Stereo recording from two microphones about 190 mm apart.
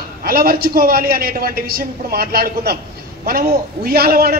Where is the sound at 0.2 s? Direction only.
50° right (ahead or behind).